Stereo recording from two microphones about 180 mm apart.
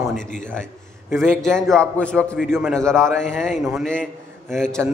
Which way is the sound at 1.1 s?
5° left (ahead or behind).